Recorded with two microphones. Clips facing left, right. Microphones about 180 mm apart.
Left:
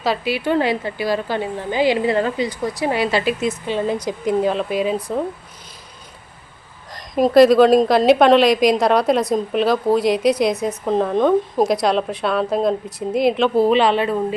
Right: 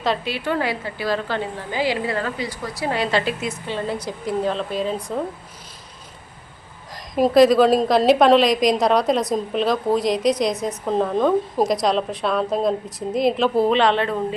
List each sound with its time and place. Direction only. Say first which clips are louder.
0.0 s a woman's voice: left 3 dB; 10° left (ahead or behind)
6.9 s a woman's voice: left 3 dB; centre (ahead or behind)